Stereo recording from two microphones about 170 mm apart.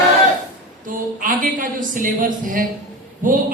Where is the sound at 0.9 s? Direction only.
55° right (ahead or behind).